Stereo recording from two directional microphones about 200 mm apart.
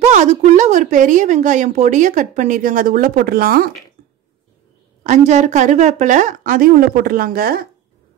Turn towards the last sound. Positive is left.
turn(degrees=-45)  # may be behind; listen again after turning